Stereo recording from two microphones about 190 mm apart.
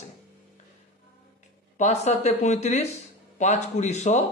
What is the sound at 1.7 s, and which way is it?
A man's voice, 35° left (ahead or behind).